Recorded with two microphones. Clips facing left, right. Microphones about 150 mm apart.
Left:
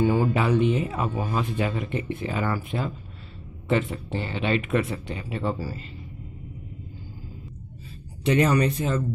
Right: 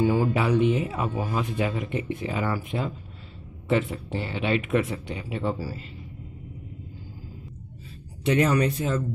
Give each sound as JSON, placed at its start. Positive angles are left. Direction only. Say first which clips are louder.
{"t": 0.0, "sound": "speech", "louder": "left 1 dB", "side_deg": -5}
{"t": 8.3, "sound": "speech", "louder": "left 1 dB", "side_deg": -5}